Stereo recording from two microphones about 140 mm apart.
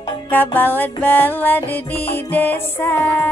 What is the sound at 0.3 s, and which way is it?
Music, 15° left (ahead or behind).